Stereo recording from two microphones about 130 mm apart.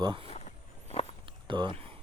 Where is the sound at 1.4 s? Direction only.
40° right (ahead or behind).